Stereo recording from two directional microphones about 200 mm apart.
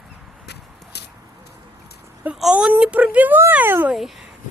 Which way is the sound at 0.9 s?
55° left (ahead or behind).